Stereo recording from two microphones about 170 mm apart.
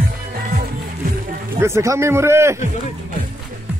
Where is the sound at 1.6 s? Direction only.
15° right (ahead or behind).